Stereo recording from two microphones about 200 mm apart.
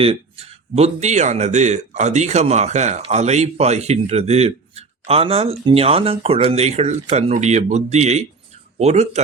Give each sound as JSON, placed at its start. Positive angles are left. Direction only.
{"t": 0.0, "sound": "speech", "side_deg": -30}